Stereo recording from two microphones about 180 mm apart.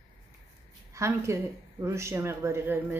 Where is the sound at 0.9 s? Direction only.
15° right (ahead or behind).